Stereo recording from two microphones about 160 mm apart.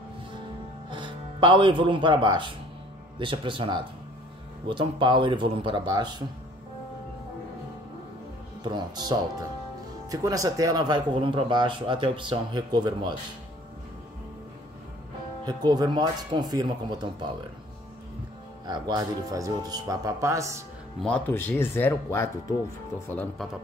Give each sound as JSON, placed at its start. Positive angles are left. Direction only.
{"t": 0.8, "sound": "speech", "side_deg": -30}
{"t": 8.6, "sound": "speech", "side_deg": -25}
{"t": 15.4, "sound": "speech", "side_deg": -25}
{"t": 18.7, "sound": "speech", "side_deg": -25}
{"t": 21.0, "sound": "speech", "side_deg": 10}